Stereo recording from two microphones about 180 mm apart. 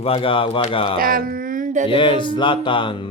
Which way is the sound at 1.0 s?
50° right (ahead or behind).